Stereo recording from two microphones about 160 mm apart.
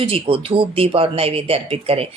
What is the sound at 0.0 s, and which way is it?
Speech, 35° right (ahead or behind).